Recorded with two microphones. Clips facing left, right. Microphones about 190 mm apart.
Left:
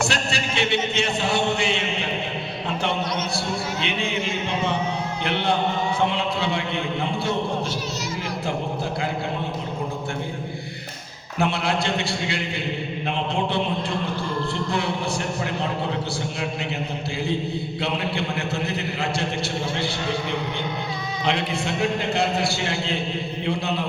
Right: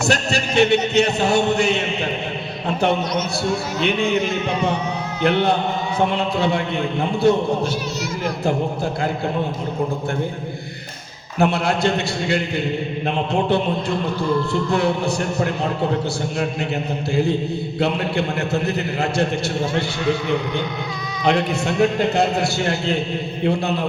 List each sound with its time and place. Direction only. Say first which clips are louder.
0.0 s chant: right 5 dB; 45° right (ahead or behind)
3.8 s chant: right 7 dB; 45° right (ahead or behind)
5.2 s chant: right 6 dB; 45° right (ahead or behind)
11.3 s chant: right 5 dB; 45° right (ahead or behind)
14.7 s chant: right 7 dB; 45° right (ahead or behind)
17.7 s chant: right 7 dB; 45° right (ahead or behind)
21.2 s chant: right 6 dB; 45° right (ahead or behind)